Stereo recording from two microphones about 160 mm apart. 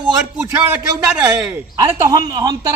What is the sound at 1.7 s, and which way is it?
Speech, 20° right (ahead or behind).